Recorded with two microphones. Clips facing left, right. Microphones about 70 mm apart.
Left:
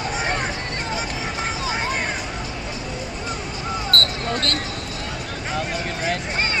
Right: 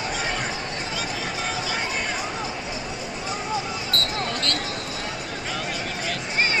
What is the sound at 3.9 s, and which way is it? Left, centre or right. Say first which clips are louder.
Basketball bounce: left 3 dB; left.